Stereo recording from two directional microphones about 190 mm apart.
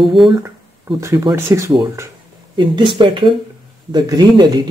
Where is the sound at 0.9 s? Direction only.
20° right (ahead or behind).